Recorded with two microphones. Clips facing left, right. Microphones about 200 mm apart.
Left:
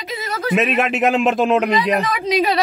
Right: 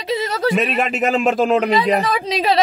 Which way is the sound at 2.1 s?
30° right (ahead or behind).